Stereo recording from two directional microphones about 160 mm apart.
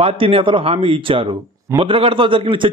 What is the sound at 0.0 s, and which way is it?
A man's voice, 35° right (ahead or behind).